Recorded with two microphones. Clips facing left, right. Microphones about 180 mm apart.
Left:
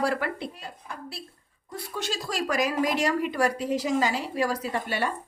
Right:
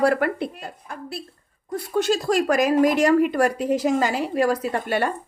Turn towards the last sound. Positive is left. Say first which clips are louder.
# right 5 dB
turn(degrees=-50)  # may be behind; listen again after turning